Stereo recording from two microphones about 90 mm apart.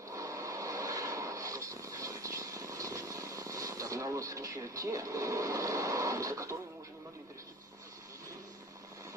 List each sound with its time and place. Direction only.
0.1 s vehicle: 35° right (ahead or behind)